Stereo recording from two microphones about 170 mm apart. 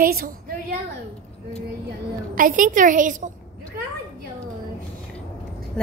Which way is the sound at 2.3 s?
50° right (ahead or behind).